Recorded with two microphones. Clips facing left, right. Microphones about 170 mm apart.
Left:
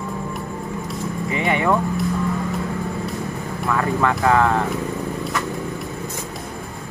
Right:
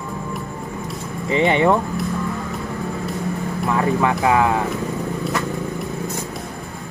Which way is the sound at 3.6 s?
20° right (ahead or behind).